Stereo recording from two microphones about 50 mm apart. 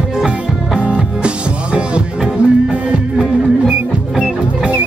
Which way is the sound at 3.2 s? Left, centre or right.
Centre.